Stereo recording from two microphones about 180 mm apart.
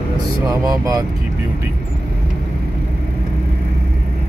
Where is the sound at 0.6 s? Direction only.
20° right (ahead or behind).